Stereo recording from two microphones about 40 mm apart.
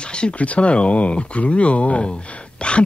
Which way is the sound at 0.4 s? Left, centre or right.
Left.